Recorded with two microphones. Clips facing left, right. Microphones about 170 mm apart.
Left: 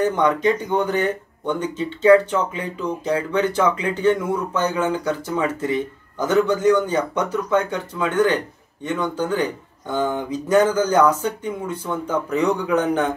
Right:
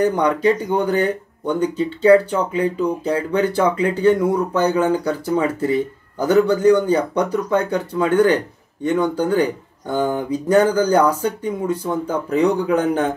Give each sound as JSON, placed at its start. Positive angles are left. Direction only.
{"t": 0.0, "sound": "speech", "side_deg": -35}